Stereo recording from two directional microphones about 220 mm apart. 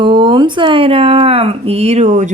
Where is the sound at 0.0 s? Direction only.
20° right (ahead or behind).